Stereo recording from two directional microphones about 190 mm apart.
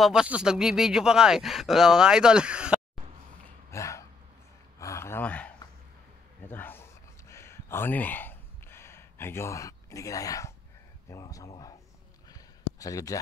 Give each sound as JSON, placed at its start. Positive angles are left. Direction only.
{"t": 0.0, "sound": "speech", "side_deg": -5}
{"t": 3.7, "sound": "a sound", "side_deg": 15}
{"t": 11.1, "sound": "speech", "side_deg": 15}
{"t": 12.7, "sound": "speech", "side_deg": 15}